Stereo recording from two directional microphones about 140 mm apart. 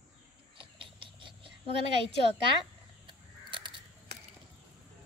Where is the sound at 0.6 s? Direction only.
35° right (ahead or behind).